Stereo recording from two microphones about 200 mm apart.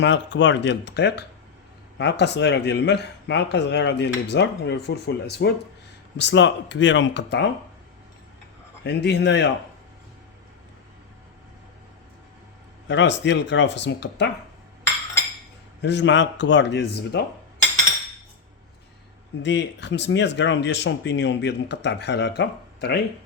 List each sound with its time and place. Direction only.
0.0 s speech: 65° left (ahead or behind)
8.8 s speech: 60° left (ahead or behind)
12.9 s speech: 60° left (ahead or behind)
15.8 s speech: 60° left (ahead or behind)
19.4 s speech: 60° left (ahead or behind)